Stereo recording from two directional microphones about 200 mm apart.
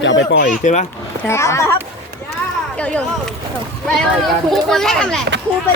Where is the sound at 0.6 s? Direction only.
35° left (ahead or behind).